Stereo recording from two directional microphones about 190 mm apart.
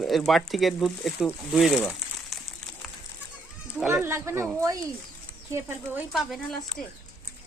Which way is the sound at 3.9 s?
15° right (ahead or behind).